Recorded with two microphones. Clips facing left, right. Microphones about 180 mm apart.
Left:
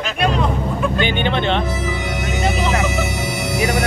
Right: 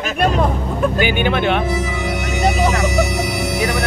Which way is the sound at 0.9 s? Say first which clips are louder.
Right 1 dB; 10° right (ahead or behind).